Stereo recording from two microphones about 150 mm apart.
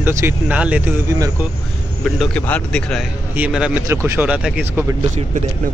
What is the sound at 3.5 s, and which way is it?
Speech, 5° right (ahead or behind).